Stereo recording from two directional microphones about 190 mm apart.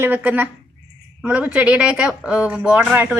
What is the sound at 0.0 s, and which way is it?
A woman's voice, 10° right (ahead or behind).